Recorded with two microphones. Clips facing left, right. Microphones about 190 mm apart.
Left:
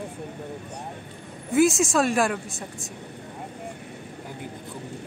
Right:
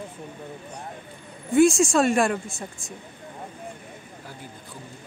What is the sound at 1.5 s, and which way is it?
Speech, 5° left (ahead or behind).